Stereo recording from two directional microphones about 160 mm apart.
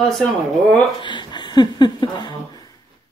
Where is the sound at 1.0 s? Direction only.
30° left (ahead or behind).